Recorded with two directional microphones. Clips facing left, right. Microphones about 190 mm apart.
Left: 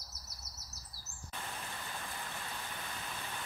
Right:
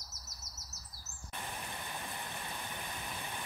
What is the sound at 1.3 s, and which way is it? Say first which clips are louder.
Vehicle: right 1 dB; 15° right (ahead or behind).